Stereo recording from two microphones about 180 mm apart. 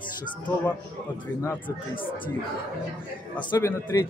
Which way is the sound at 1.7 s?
30° left (ahead or behind).